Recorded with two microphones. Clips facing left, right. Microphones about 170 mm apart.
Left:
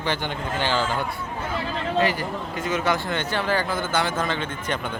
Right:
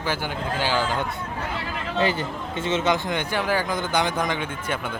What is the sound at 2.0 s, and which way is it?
Speech, 25° right (ahead or behind).